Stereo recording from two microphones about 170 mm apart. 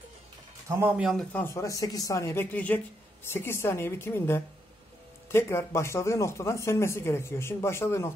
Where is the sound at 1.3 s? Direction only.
15° left (ahead or behind).